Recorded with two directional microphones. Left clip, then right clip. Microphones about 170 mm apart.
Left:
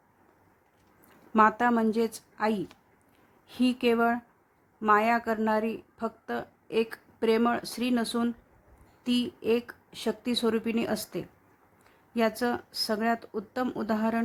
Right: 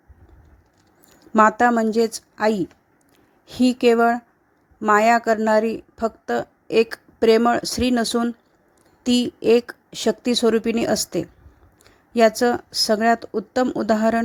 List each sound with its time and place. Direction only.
1.4 s a woman's voice: 35° right (ahead or behind)